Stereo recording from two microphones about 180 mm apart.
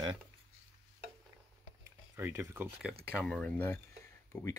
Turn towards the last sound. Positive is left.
turn(degrees=15)  # may be behind; listen again after turning